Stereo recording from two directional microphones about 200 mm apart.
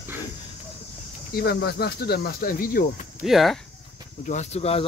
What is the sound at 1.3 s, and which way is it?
Speech, 55° left (ahead or behind).